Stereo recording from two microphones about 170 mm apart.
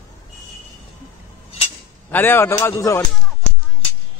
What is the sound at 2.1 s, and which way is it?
Speech, 10° left (ahead or behind).